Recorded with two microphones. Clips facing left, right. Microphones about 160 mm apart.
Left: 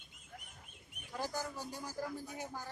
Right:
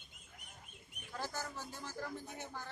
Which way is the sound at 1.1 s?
15° left (ahead or behind).